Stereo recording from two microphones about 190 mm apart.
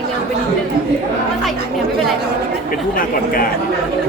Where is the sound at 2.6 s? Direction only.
50° left (ahead or behind).